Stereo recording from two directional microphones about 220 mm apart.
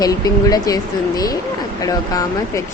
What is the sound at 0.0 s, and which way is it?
Speech, 15° left (ahead or behind).